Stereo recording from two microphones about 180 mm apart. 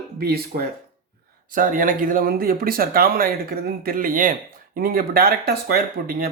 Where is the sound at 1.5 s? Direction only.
50° right (ahead or behind).